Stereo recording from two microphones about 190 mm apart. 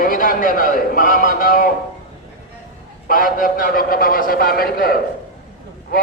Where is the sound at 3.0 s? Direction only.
50° left (ahead or behind).